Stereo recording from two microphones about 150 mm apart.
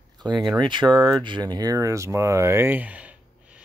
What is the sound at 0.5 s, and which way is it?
Speech, 30° right (ahead or behind).